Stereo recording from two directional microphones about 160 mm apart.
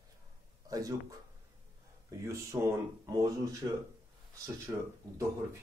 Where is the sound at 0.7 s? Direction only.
20° right (ahead or behind).